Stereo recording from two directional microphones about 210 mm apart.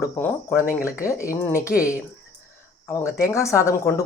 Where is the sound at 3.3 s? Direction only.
15° left (ahead or behind).